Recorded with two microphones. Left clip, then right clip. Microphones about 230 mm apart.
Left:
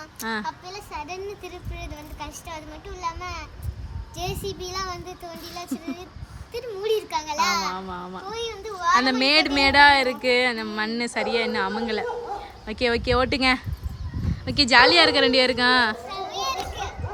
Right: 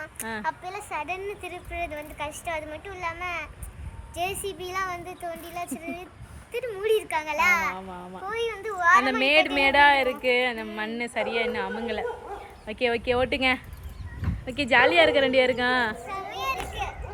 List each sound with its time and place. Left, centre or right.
0.0 s a child's voice: centre